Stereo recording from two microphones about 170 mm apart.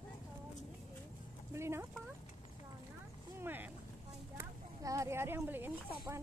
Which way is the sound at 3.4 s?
10° right (ahead or behind).